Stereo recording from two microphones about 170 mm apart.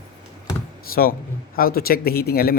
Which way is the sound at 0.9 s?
60° left (ahead or behind).